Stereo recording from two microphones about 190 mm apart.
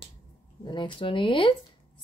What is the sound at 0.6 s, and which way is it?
Speech, 25° left (ahead or behind).